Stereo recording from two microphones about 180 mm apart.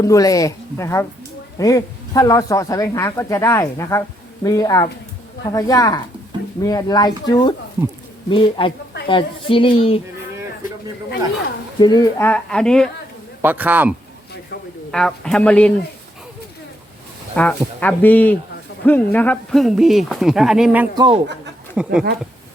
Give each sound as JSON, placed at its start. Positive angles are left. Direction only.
{"t": 0.0, "sound": "a man's voice", "side_deg": 20}
{"t": 11.8, "sound": "a man's voice", "side_deg": 20}
{"t": 13.4, "sound": "a man's voice", "side_deg": -10}
{"t": 14.5, "sound": "a sound", "side_deg": 60}
{"t": 14.9, "sound": "speech", "side_deg": 5}
{"t": 17.3, "sound": "a man's voice", "side_deg": 10}
{"t": 20.9, "sound": "speech", "side_deg": -25}
{"t": 21.8, "sound": "speech", "side_deg": -5}